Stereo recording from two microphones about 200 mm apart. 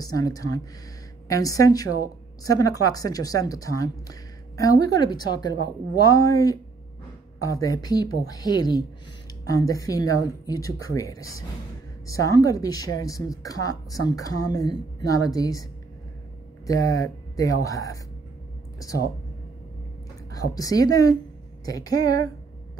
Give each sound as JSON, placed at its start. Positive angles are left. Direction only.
{"t": 0.0, "sound": "a woman's voice", "side_deg": 20}
{"t": 20.3, "sound": "a woman's voice", "side_deg": 15}